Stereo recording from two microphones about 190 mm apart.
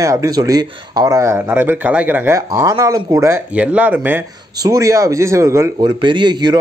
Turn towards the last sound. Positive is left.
turn(degrees=-25)  # may be behind; listen again after turning